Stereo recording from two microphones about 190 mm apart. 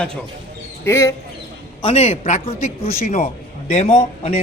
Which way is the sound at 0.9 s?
15° left (ahead or behind).